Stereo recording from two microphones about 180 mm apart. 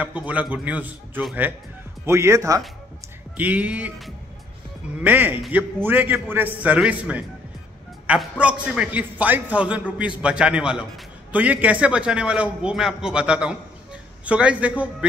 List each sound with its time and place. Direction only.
0.0 s a man's voice: 10° right (ahead or behind)